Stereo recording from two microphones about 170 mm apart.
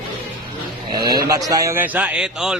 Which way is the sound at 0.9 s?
25° right (ahead or behind).